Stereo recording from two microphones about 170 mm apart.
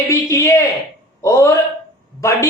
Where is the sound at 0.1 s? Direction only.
15° left (ahead or behind).